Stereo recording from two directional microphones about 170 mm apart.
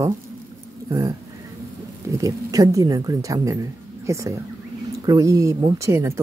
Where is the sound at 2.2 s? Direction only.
20° right (ahead or behind).